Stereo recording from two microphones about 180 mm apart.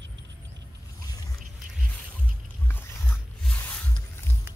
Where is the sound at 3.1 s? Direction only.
Centre (ahead or behind).